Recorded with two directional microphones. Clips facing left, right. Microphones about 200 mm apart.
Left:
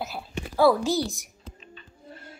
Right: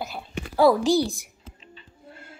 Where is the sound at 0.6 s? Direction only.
15° right (ahead or behind).